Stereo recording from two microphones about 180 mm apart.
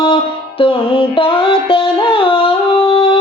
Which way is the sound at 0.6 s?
30° left (ahead or behind).